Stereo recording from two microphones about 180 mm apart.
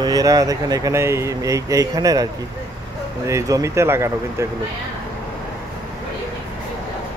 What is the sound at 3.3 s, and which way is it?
Speech, 15° right (ahead or behind).